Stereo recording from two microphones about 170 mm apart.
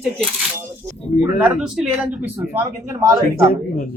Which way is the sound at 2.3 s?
15° right (ahead or behind).